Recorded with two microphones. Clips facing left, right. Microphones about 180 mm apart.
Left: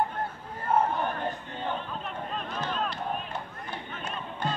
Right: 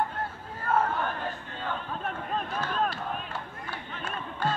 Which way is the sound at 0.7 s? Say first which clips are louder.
Left 1 dB; 20° left (ahead or behind).